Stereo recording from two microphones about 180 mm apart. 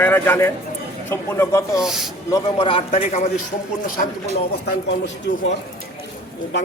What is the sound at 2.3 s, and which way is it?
Speech, 30° left (ahead or behind).